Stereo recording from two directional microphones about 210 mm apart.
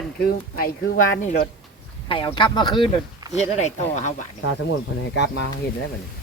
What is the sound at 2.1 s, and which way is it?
Speech, 20° left (ahead or behind).